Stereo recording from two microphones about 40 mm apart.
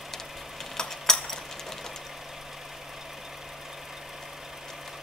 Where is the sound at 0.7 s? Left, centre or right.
Centre.